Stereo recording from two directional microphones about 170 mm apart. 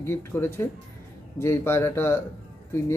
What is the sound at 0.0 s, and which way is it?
A man's voice, 15° left (ahead or behind).